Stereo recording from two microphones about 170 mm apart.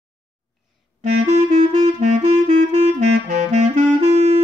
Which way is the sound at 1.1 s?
40° right (ahead or behind).